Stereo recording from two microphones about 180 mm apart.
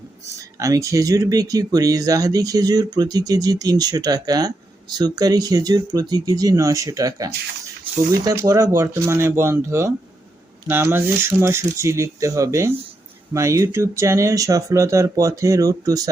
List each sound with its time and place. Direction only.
0.3 s speech: 20° right (ahead or behind)
7.9 s a sound: 30° right (ahead or behind)
8.2 s speech: 20° right (ahead or behind)